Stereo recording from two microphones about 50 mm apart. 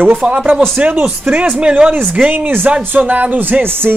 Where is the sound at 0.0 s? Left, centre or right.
Right.